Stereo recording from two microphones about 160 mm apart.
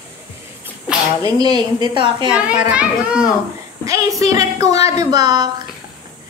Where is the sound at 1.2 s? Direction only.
25° right (ahead or behind).